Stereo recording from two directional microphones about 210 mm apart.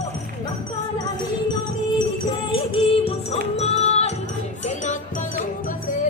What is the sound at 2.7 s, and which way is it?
Music, 25° left (ahead or behind).